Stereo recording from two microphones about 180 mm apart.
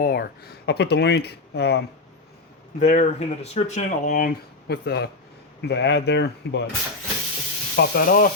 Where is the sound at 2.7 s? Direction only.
45° left (ahead or behind); by 6.7 s 75° left (ahead or behind).